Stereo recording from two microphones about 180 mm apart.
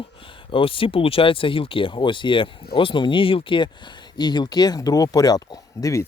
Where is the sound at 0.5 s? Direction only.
30° left (ahead or behind).